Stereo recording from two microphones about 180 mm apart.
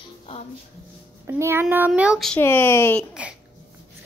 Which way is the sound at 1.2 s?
15° right (ahead or behind).